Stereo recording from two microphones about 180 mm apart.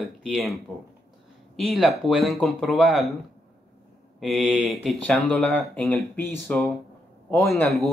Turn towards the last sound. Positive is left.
turn(degrees=0)  # may be behind; listen again after turning